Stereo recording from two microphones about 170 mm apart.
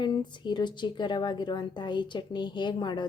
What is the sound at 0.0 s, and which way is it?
A woman's voice, 25° left (ahead or behind).